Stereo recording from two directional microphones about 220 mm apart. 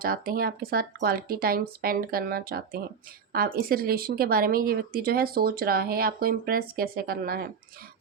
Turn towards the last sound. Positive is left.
turn(degrees=-45)  # may be behind; listen again after turning